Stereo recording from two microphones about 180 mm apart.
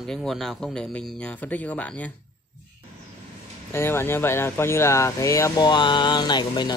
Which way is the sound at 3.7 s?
15° left (ahead or behind).